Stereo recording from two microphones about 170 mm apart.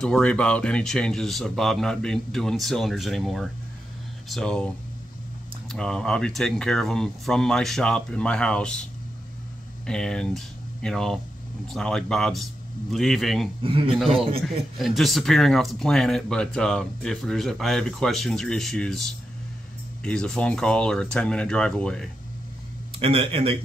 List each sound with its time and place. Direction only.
0.0 s speech: 5° left (ahead or behind)
5.7 s speech: 5° left (ahead or behind)
9.8 s speech: 5° left (ahead or behind)
13.6 s speech: 30° right (ahead or behind)
13.9 s speech: centre (ahead or behind)
22.9 s speech: 35° right (ahead or behind)